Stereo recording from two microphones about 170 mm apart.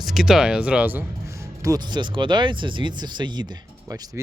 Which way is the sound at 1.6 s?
25° right (ahead or behind).